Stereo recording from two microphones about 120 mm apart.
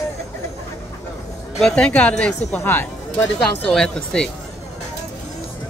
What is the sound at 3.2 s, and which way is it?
Speech, 5° left (ahead or behind).